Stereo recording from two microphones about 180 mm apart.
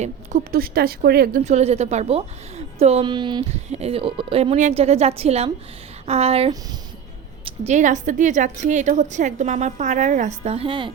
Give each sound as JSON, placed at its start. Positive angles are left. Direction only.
{"t": 0.0, "sound": "a woman's voice", "side_deg": -45}
{"t": 1.5, "sound": "a woman's voice", "side_deg": -35}
{"t": 3.5, "sound": "a woman's voice", "side_deg": -35}